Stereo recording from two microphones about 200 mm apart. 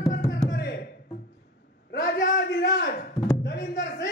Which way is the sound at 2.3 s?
60° left (ahead or behind).